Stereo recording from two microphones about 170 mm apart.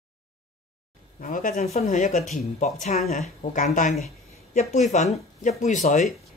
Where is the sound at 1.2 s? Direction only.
55° left (ahead or behind).